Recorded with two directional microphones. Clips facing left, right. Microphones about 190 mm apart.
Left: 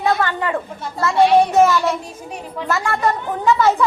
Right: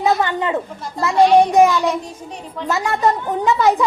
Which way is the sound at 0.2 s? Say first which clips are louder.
Right 1 dB; 20° right (ahead or behind).